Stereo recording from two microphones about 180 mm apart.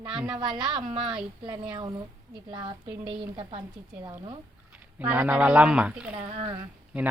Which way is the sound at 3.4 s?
30° right (ahead or behind).